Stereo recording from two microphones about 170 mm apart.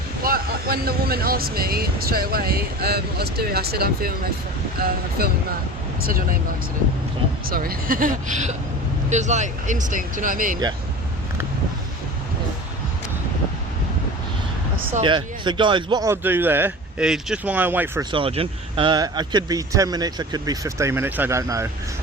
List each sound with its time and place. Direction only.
0.2 s speech: 60° right (ahead or behind)
5.2 s speech: 65° right (ahead or behind)
7.5 s speech: 60° right (ahead or behind)
15.0 s speech: 30° right (ahead or behind)
16.2 s speech: 10° right (ahead or behind)
18.1 s speech: 35° right (ahead or behind); by 21.7 s 15° right (ahead or behind)